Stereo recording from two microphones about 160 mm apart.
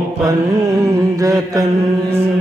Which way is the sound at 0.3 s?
20° right (ahead or behind).